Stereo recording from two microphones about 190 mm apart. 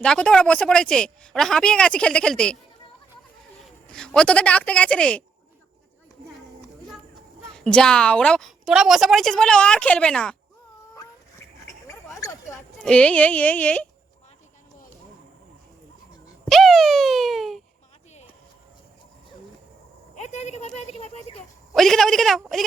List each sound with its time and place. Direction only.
0.0 s a woman's voice: 5° left (ahead or behind)
3.9 s speech: 5° left (ahead or behind)
7.5 s a woman's voice: 5° left (ahead or behind)
12.2 s a sound: 15° left (ahead or behind)
12.8 s speech: 5° left (ahead or behind)
16.5 s a sound: centre (ahead or behind)
20.1 s a woman's voice: 35° left (ahead or behind)
21.7 s a woman's voice: centre (ahead or behind)